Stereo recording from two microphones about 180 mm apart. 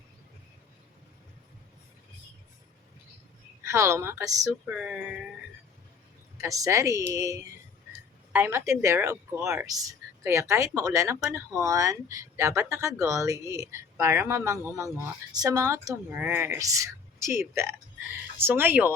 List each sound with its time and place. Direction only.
3.6 s speech: 15° right (ahead or behind)
6.3 s speech: 20° right (ahead or behind)